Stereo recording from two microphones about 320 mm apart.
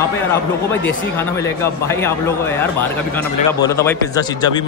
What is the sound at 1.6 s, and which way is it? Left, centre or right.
A man's voice, centre.